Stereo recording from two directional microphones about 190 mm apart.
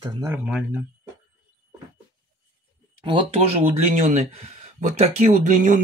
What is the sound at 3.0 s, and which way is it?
Speech, 25° right (ahead or behind).